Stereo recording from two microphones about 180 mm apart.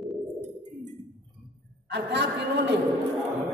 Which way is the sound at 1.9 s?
75° right (ahead or behind).